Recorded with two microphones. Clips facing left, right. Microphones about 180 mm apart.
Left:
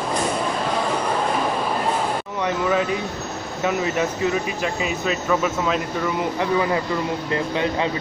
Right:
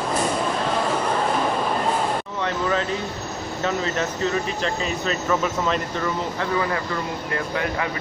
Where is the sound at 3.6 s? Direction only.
10° left (ahead or behind).